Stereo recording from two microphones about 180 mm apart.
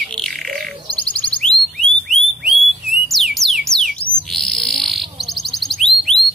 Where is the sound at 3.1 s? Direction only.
Centre (ahead or behind).